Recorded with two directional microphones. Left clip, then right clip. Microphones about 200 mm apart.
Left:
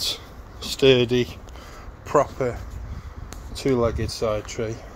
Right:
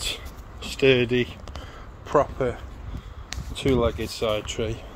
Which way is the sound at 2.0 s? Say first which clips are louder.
Left 1 dB; centre (ahead or behind).